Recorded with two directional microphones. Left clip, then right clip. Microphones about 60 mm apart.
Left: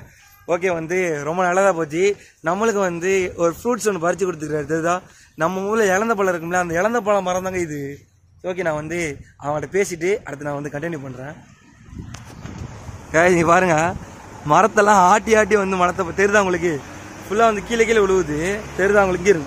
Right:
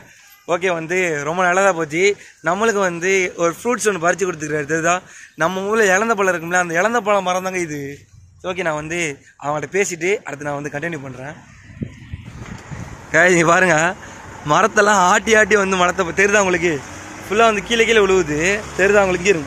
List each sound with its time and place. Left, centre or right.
0.5 s speech: centre; by 11.0 s left
11.1 s speech: centre
13.1 s speech: centre
14.5 s speech: centre